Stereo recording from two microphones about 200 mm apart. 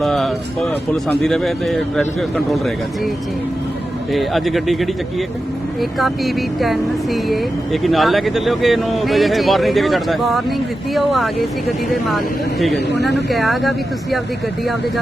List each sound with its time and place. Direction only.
0.0 s speech: centre (ahead or behind)
4.1 s speech: centre (ahead or behind)
6.0 s speech: centre (ahead or behind)
12.7 s speech: 55° left (ahead or behind)
13.3 s speech: centre (ahead or behind)